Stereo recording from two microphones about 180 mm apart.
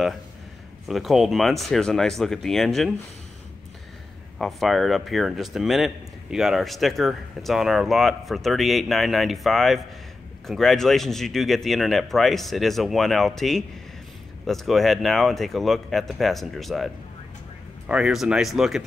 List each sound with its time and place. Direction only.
0.8 s speech: centre (ahead or behind)
4.4 s speech: centre (ahead or behind)